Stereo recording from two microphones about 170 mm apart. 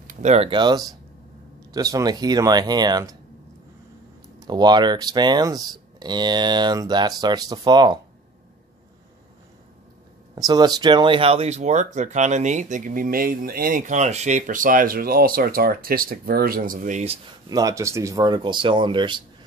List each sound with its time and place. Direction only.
0.0 s speech: 50° right (ahead or behind); by 3.2 s 25° right (ahead or behind)
4.5 s speech: 25° right (ahead or behind)
10.3 s speech: 25° right (ahead or behind); by 17.2 s 40° right (ahead or behind)
17.5 s speech: 20° right (ahead or behind)